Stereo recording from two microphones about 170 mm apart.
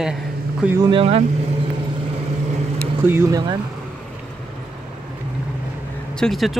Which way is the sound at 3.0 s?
15° right (ahead or behind).